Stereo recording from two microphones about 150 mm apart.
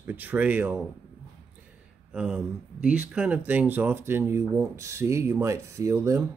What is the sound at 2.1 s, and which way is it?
Speech, 5° right (ahead or behind).